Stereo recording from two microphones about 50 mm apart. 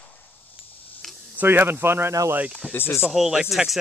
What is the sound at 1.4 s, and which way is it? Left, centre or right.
Speech, right.